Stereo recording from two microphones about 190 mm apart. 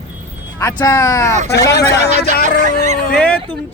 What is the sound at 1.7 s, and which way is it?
Speech, 55° left (ahead or behind).